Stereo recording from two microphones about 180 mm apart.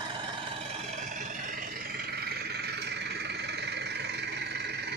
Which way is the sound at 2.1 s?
65° right (ahead or behind).